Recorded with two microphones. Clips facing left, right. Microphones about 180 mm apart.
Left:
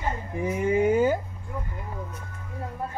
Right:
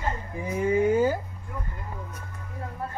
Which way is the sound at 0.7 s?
20° left (ahead or behind).